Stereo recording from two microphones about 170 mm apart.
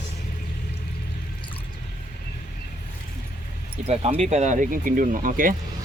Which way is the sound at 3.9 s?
40° right (ahead or behind).